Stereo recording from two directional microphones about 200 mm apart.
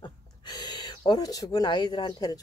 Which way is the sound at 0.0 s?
20° left (ahead or behind).